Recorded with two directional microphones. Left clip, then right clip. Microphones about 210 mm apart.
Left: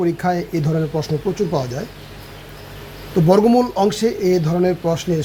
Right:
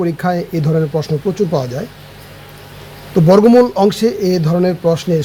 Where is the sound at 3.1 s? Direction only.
30° right (ahead or behind).